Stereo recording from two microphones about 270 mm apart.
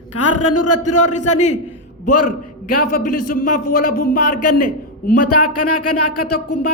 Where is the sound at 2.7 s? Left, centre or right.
Left.